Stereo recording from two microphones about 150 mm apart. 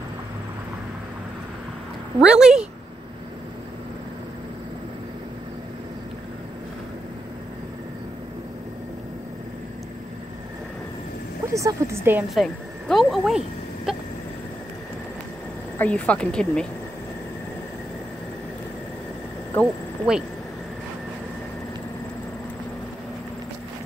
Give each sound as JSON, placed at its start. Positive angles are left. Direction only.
{"t": 2.1, "sound": "speech", "side_deg": -5}
{"t": 11.5, "sound": "speech", "side_deg": -20}
{"t": 12.4, "sound": "speech", "side_deg": 0}
{"t": 13.9, "sound": "a sound", "side_deg": -5}
{"t": 15.8, "sound": "speech", "side_deg": 10}
{"t": 19.6, "sound": "speech", "side_deg": -5}